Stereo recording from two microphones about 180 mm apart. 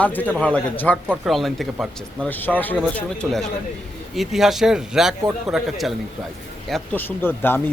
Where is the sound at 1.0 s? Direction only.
5° right (ahead or behind).